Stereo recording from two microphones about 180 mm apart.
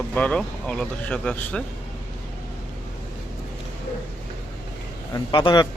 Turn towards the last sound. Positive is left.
turn(degrees=25)  # may be behind; listen again after turning